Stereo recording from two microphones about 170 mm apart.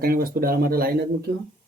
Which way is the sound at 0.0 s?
60° right (ahead or behind).